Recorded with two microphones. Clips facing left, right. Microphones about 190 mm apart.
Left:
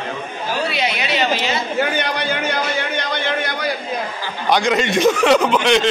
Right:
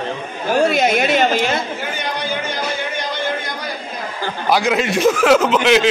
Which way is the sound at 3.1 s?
70° left (ahead or behind).